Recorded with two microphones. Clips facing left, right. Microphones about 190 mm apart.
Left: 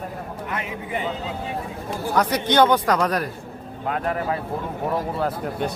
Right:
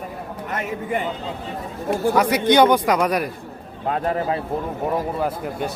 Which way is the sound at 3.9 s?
30° right (ahead or behind).